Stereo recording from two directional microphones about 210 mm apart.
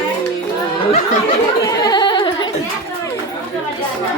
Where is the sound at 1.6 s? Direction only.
15° left (ahead or behind).